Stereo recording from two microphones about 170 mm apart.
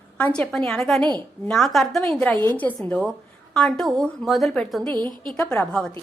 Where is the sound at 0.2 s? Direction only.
5° left (ahead or behind).